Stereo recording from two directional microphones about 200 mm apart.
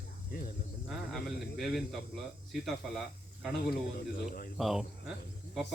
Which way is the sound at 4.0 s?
50° left (ahead or behind).